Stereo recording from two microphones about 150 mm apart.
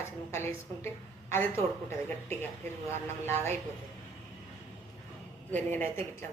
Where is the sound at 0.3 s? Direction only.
15° left (ahead or behind).